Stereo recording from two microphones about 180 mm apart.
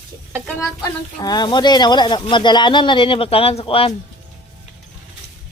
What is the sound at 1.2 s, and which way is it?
Speech, 20° left (ahead or behind).